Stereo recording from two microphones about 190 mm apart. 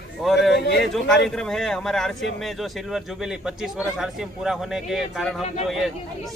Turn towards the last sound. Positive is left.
turn(degrees=0)  # may be behind; listen again after turning